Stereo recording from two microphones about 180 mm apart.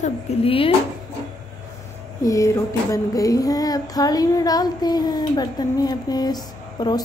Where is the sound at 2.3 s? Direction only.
15° left (ahead or behind).